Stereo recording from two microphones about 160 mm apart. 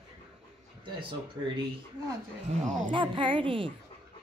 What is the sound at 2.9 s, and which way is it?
Speech, 30° right (ahead or behind).